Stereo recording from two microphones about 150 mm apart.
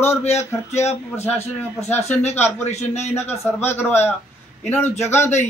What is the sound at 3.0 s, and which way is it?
Speech, 15° left (ahead or behind).